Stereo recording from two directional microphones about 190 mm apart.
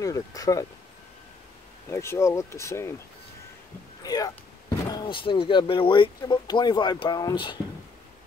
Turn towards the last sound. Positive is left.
turn(degrees=20)  # may be behind; listen again after turning